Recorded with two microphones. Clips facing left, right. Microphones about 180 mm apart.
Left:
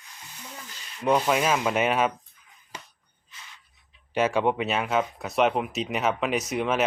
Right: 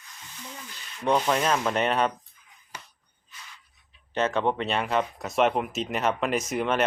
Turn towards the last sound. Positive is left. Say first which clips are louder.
# even
turn(degrees=0)  # may be behind; listen again after turning